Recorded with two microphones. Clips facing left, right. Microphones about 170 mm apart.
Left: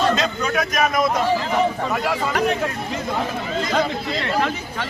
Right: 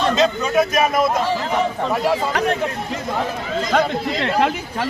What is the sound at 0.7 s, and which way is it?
Speech, 25° right (ahead or behind).